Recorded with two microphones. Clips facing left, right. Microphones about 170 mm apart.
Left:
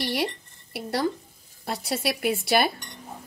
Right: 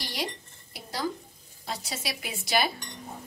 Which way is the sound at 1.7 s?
60° left (ahead or behind).